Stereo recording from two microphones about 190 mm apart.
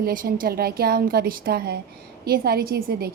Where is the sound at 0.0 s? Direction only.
50° right (ahead or behind).